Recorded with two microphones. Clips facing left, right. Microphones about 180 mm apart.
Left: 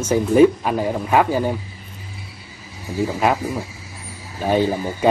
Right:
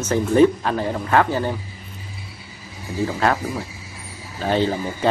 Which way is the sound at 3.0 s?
10° left (ahead or behind).